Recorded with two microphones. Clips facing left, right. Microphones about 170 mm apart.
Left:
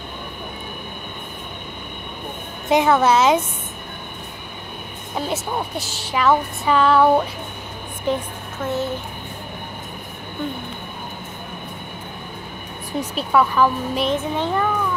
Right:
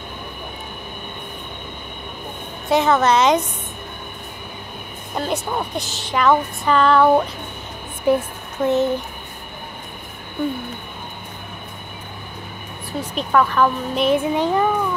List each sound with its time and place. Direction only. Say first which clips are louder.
2.7 s a woman's voice: even; 10° left (ahead or behind)
5.1 s a woman's voice: right 1 dB; 5° left (ahead or behind)
8.1 s child singing: right 5 dB; 10° right (ahead or behind)
13.1 s a woman's voice: right 1 dB; 10° left (ahead or behind)
14.0 s child singing: right 6 dB; 10° right (ahead or behind)